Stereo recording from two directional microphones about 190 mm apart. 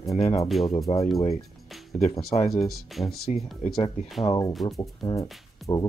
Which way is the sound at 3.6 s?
30° left (ahead or behind).